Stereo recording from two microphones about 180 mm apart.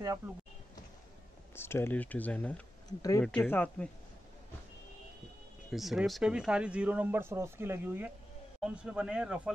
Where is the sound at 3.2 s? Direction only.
10° left (ahead or behind).